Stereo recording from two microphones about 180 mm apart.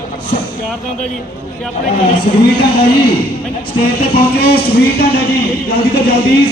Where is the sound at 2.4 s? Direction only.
65° left (ahead or behind).